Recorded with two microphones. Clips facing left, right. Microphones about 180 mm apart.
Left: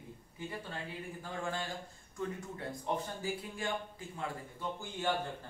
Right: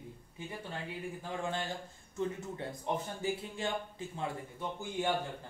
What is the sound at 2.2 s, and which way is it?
Speech, 25° right (ahead or behind).